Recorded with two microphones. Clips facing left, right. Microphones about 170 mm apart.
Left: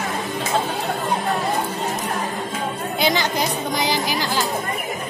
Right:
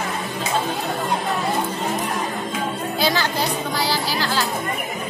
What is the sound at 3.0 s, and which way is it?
Speech, 20° left (ahead or behind).